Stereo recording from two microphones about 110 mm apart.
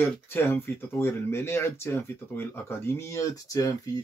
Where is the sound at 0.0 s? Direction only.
20° left (ahead or behind).